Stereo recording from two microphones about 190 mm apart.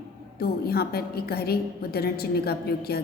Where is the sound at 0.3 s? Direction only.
55° left (ahead or behind).